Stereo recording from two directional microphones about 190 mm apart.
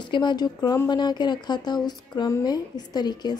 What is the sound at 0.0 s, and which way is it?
Speech, 25° left (ahead or behind).